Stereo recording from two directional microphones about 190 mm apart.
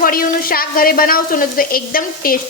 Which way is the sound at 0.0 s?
50° left (ahead or behind).